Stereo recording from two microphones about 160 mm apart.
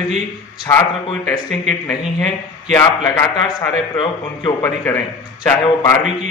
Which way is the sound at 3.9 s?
30° left (ahead or behind).